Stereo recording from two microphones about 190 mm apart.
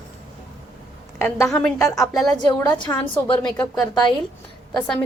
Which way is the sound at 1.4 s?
5° left (ahead or behind).